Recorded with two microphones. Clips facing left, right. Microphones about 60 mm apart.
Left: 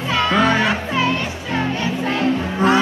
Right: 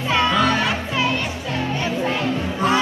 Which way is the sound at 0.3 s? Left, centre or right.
Left.